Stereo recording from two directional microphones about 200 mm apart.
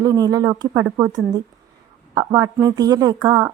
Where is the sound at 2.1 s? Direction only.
15° right (ahead or behind).